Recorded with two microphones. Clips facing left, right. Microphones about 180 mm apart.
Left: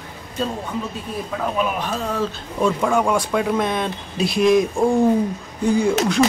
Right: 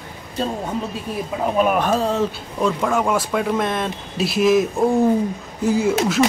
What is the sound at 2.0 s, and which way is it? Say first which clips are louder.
Speech: right 3 dB; 25° right (ahead or behind).